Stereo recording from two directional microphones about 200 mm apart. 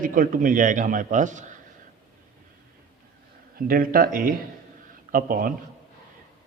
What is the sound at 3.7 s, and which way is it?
A man's voice, 45° right (ahead or behind).